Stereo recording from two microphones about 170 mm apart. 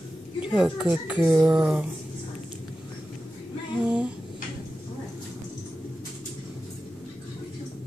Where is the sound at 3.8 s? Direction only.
5° right (ahead or behind).